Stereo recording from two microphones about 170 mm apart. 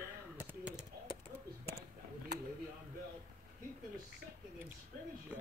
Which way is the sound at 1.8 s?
70° right (ahead or behind).